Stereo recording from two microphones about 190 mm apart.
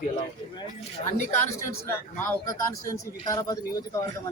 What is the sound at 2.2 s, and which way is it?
A man's voice, 15° left (ahead or behind).